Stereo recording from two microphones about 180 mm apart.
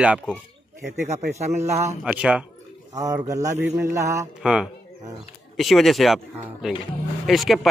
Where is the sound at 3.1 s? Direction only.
20° right (ahead or behind).